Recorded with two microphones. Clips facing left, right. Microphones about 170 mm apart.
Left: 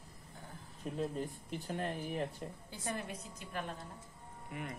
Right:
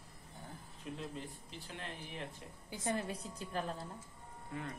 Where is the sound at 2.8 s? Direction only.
30° right (ahead or behind).